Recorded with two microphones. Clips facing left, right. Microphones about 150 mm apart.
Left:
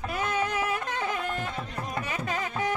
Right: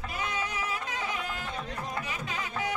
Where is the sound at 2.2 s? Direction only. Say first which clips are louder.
Left 6 dB; 45° left (ahead or behind).